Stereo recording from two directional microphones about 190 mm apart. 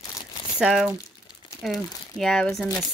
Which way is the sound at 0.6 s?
5° right (ahead or behind).